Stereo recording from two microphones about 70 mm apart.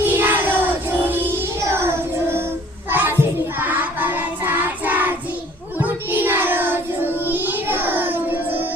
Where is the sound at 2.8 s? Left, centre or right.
Right.